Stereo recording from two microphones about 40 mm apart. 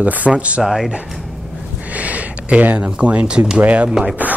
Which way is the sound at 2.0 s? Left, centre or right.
Right.